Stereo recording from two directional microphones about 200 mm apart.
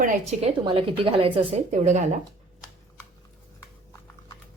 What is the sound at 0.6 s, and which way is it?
A woman's voice, 25° right (ahead or behind).